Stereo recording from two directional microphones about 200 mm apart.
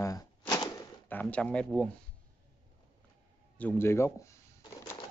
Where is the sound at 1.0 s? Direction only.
5° left (ahead or behind).